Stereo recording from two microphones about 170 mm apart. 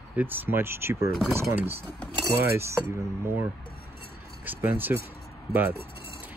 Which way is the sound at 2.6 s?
15° right (ahead or behind).